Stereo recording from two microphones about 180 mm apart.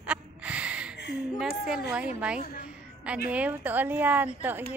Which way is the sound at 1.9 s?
5° right (ahead or behind).